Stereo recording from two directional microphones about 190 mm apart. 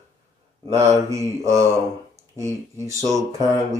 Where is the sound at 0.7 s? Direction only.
15° right (ahead or behind).